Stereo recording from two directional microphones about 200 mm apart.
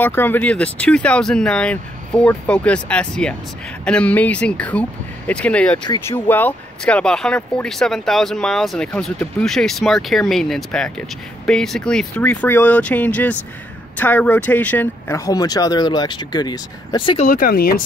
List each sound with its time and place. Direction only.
0.0 s speech: 10° left (ahead or behind); by 17.3 s 25° left (ahead or behind)
17.3 s speech: 45° left (ahead or behind)